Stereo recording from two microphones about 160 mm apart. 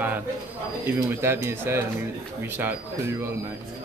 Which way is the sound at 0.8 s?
15° right (ahead or behind).